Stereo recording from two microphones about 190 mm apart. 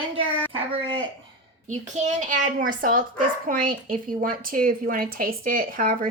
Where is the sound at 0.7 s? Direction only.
25° right (ahead or behind).